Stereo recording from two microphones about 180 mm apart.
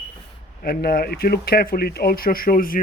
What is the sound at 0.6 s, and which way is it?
Speech, 55° left (ahead or behind).